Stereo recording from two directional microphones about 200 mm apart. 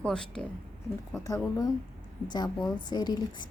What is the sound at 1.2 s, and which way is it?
A woman's voice, 20° left (ahead or behind).